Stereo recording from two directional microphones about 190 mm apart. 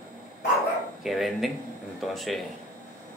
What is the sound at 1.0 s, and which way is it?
A man's voice, centre (ahead or behind).